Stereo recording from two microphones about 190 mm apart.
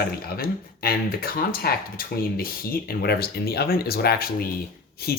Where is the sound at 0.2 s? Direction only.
50° left (ahead or behind).